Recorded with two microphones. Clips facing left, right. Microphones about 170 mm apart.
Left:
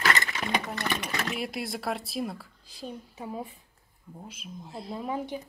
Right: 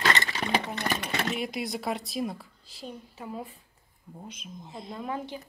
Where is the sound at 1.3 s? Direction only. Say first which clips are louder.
Right 1 dB; centre (ahead or behind).